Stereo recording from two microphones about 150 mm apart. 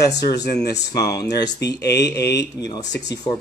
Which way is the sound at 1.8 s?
90° left.